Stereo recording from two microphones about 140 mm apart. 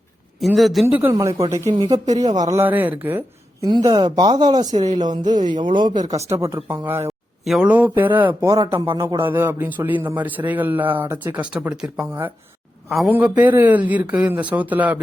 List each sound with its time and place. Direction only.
0.3 s speech: centre (ahead or behind)
1.1 s speech: 25° right (ahead or behind)
2.6 s a man's voice: 15° right (ahead or behind)
3.6 s speech: 25° right (ahead or behind)
6.2 s a man's voice: 20° right (ahead or behind)
7.4 s speech: centre (ahead or behind)
7.7 s a man's voice: 10° right (ahead or behind)
8.6 s speech: 35° right (ahead or behind)
9.0 s a man's voice: 20° right (ahead or behind)